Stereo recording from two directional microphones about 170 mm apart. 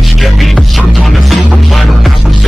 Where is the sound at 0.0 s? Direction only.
Centre (ahead or behind).